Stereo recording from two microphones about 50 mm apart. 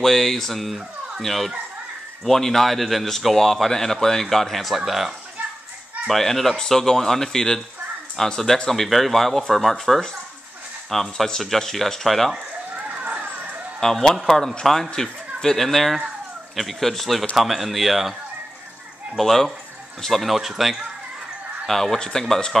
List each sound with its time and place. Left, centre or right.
0.0 s a man's voice: centre
6.0 s a man's voice: centre
12.7 s a sound: right
13.7 s a man's voice: centre
19.1 s a man's voice: centre
21.6 s speech: centre